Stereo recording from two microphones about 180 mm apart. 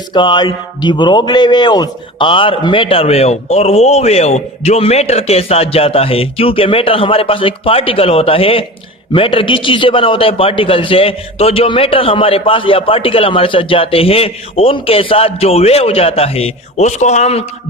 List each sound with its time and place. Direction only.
0.1 s a man's voice: 25° left (ahead or behind)